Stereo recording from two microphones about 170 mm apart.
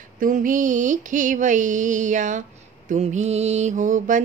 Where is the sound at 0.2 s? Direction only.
50° right (ahead or behind).